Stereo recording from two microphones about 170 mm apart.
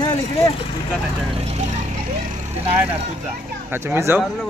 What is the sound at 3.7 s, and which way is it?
Speech, 15° right (ahead or behind).